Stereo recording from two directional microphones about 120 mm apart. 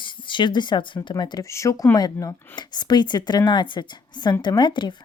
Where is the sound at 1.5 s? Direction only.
25° left (ahead or behind).